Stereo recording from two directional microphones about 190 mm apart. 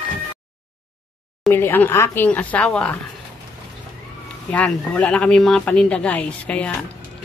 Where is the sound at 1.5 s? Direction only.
10° left (ahead or behind).